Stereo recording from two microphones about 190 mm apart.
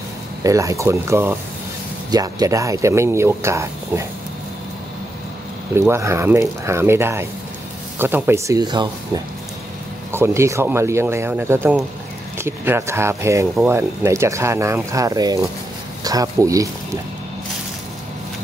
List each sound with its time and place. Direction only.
0.4 s speech: 15° right (ahead or behind)
5.8 s speech: 15° right (ahead or behind)